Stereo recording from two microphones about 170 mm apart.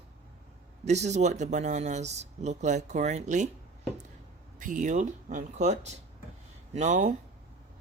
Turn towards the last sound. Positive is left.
turn(degrees=-45)  # may be behind; listen again after turning